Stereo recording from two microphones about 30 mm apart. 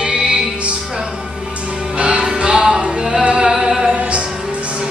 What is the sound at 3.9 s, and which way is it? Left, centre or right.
Music, right.